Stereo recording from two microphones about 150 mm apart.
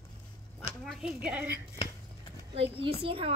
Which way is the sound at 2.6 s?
40° right (ahead or behind).